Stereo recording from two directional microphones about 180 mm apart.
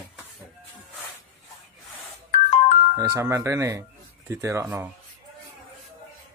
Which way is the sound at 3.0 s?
15° right (ahead or behind).